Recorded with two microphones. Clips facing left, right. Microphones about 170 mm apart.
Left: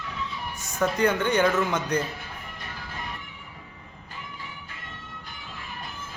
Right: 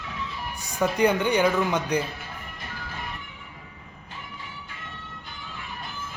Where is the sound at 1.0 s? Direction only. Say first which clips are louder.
Right 2 dB; 15° right (ahead or behind).